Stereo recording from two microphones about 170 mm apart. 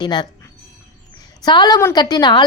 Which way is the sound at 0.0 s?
25° left (ahead or behind).